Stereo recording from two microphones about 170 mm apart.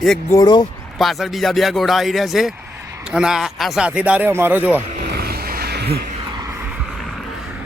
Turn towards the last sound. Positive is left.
turn(degrees=-70)  # may be behind; listen again after turning